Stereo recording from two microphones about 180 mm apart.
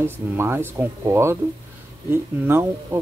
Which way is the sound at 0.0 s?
15° right (ahead or behind).